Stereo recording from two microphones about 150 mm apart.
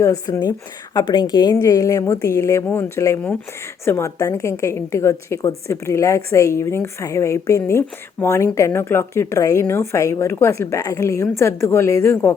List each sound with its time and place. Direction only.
0.0 s a woman's voice: 20° left (ahead or behind)